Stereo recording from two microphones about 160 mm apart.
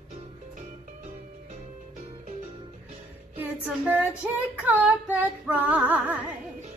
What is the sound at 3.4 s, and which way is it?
Female singing, 10° right (ahead or behind).